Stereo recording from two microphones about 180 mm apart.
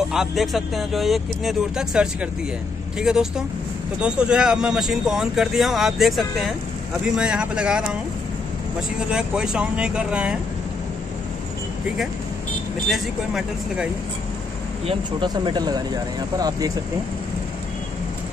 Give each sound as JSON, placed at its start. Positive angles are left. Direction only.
{"t": 0.1, "sound": "speech", "side_deg": 0}
{"t": 9.1, "sound": "speech", "side_deg": -5}
{"t": 12.8, "sound": "speech", "side_deg": 0}
{"t": 14.9, "sound": "speech", "side_deg": -25}